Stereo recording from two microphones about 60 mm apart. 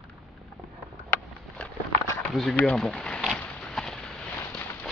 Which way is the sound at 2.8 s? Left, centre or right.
Centre.